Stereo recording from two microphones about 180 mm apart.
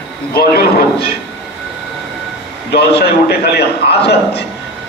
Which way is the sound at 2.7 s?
65° left (ahead or behind).